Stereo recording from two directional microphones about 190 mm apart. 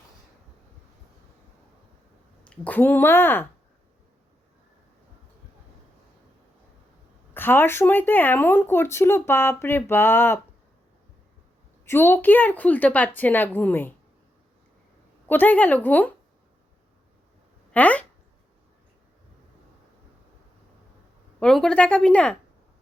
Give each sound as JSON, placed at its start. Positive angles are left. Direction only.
{"t": 2.6, "sound": "speech", "side_deg": 10}
{"t": 7.3, "sound": "speech", "side_deg": 10}
{"t": 11.9, "sound": "speech", "side_deg": 10}
{"t": 15.3, "sound": "speech", "side_deg": 10}
{"t": 17.7, "sound": "speech", "side_deg": 5}
{"t": 21.3, "sound": "speech", "side_deg": 5}